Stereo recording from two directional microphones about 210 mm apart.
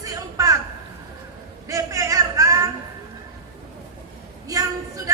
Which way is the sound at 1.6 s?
15° right (ahead or behind).